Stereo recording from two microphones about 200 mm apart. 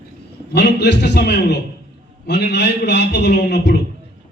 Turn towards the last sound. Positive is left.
turn(degrees=55)  # may be behind; listen again after turning